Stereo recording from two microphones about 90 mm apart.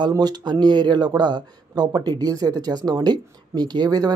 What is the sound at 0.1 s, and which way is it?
A man's voice, 50° right (ahead or behind).